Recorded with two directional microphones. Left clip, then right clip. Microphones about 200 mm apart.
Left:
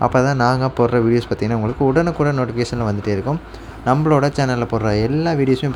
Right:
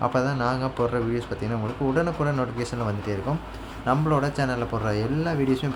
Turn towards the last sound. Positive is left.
turn(degrees=30)  # may be behind; listen again after turning